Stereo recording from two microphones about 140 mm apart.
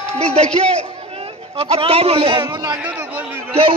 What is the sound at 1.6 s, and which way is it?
Speech, 45° right (ahead or behind).